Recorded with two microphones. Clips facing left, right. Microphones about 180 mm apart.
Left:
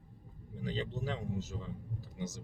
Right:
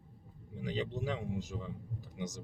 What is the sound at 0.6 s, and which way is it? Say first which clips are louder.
Speech: right 1 dB; 15° right (ahead or behind).